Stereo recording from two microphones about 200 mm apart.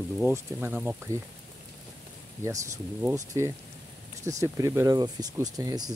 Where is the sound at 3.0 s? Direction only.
15° right (ahead or behind).